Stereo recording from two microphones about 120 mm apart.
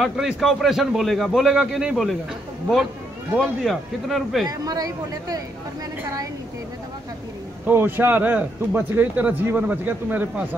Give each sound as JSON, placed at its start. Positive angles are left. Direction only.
{"t": 0.0, "sound": "a man's voice", "side_deg": 0}
{"t": 3.3, "sound": "a man's voice", "side_deg": 0}
{"t": 4.5, "sound": "speech", "side_deg": -30}
{"t": 7.6, "sound": "speech", "side_deg": -20}